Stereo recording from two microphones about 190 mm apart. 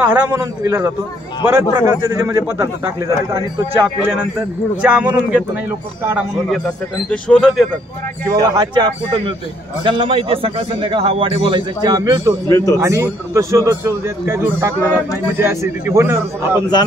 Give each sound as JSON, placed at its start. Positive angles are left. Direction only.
{"t": 0.0, "sound": "a man's voice", "side_deg": -10}
{"t": 4.8, "sound": "a man's voice", "side_deg": -5}
{"t": 6.5, "sound": "speech", "side_deg": 5}
{"t": 8.3, "sound": "a man's voice", "side_deg": -20}
{"t": 12.4, "sound": "speech", "side_deg": 20}
{"t": 12.7, "sound": "a man's voice", "side_deg": -15}